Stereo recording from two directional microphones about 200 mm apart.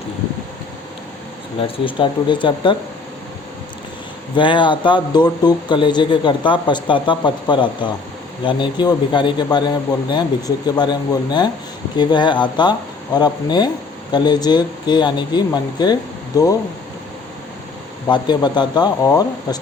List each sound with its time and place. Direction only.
1.6 s speech: 25° left (ahead or behind)
4.4 s speech: 25° left (ahead or behind)
18.1 s speech: 20° left (ahead or behind)